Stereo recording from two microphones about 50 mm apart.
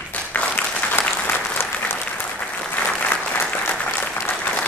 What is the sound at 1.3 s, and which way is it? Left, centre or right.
Applause, left.